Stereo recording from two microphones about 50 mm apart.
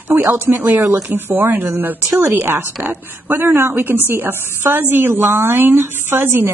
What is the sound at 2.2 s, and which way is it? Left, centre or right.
A woman's voice, right.